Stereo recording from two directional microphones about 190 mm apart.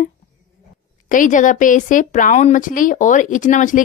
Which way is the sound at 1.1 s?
45° left (ahead or behind).